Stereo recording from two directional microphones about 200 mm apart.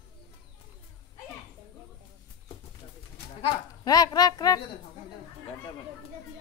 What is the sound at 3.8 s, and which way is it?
Speech, 20° left (ahead or behind).